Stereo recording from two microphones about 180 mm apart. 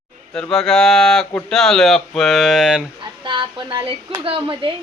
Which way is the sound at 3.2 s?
25° right (ahead or behind).